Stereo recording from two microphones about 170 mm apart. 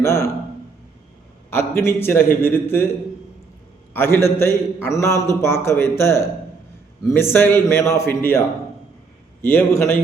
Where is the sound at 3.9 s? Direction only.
15° left (ahead or behind).